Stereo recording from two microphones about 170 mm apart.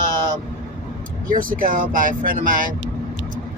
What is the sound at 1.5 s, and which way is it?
Speech, 55° right (ahead or behind).